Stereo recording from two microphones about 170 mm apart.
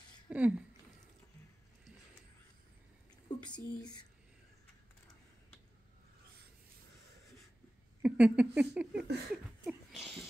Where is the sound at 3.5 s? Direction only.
25° left (ahead or behind).